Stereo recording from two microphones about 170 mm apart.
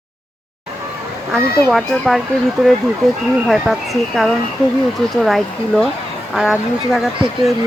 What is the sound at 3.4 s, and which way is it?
Speech, centre (ahead or behind).